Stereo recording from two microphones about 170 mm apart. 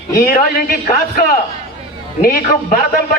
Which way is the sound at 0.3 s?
55° left (ahead or behind).